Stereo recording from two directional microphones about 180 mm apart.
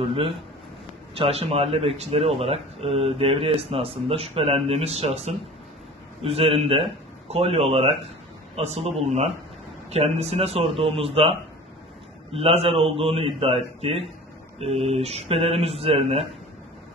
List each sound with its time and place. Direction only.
0.0 s speech: 30° right (ahead or behind)